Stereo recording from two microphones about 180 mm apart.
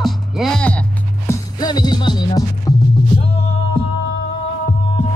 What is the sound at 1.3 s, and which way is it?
Music, 20° left (ahead or behind).